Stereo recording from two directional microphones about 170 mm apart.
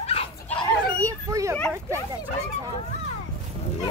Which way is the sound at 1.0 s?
20° right (ahead or behind).